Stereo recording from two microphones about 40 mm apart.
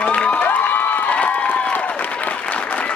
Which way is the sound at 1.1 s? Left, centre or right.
Left.